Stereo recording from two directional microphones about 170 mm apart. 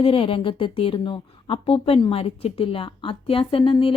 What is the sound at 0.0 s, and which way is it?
A woman's voice, 35° left (ahead or behind).